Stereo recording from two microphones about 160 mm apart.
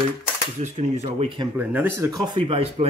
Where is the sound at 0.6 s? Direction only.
45° right (ahead or behind).